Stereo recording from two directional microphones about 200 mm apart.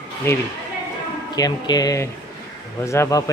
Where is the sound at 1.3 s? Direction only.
20° left (ahead or behind).